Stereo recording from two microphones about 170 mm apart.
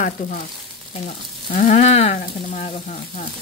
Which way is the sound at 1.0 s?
45° left (ahead or behind).